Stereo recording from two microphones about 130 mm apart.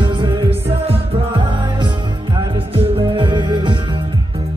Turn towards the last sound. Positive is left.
turn(degrees=-35)  # may be behind; listen again after turning